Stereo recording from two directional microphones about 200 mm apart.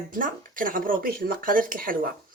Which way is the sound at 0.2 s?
45° right (ahead or behind).